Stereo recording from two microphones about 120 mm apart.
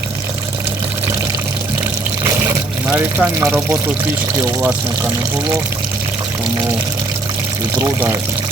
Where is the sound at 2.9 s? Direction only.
10° right (ahead or behind).